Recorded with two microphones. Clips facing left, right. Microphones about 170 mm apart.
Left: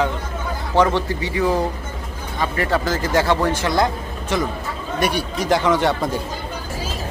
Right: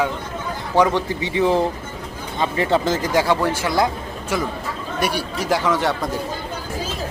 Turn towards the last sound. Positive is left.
turn(degrees=0)  # may be behind; listen again after turning